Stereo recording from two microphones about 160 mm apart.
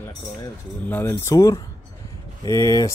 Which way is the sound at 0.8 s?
15° left (ahead or behind).